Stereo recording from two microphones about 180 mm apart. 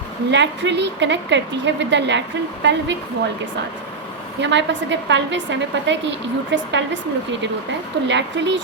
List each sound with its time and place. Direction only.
0.3 s a woman's voice: 75° right (ahead or behind)
4.4 s a woman's voice: 80° right
8.0 s a woman's voice: 85° right